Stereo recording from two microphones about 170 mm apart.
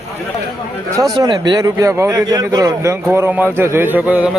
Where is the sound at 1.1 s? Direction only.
25° right (ahead or behind); by 4.3 s 10° right (ahead or behind).